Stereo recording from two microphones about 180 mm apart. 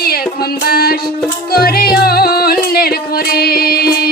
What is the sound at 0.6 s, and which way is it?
Music, 55° left (ahead or behind).